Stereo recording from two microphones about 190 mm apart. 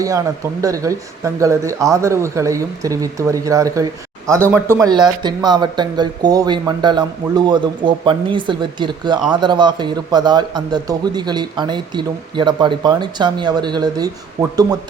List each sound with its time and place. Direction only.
0.6 s speech: 15° right (ahead or behind)